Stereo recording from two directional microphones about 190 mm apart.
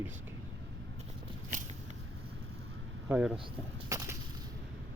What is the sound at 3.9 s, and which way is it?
Whip, 15° right (ahead or behind).